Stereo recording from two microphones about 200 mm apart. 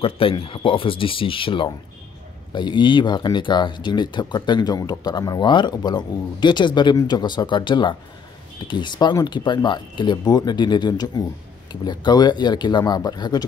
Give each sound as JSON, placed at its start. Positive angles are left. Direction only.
{"t": 0.0, "sound": "speech", "side_deg": 25}